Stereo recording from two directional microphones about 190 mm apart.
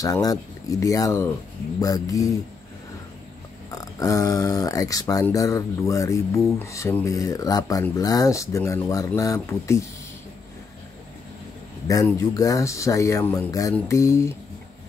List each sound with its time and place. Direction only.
0.0 s speech: 20° left (ahead or behind)
3.7 s speech: 20° left (ahead or behind)
11.9 s speech: 15° left (ahead or behind)